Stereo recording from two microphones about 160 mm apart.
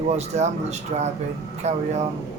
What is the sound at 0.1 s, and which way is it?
A man's voice, 45° right (ahead or behind).